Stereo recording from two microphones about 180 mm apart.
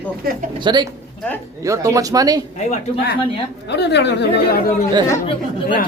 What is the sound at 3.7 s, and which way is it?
Speech, 75° left (ahead or behind).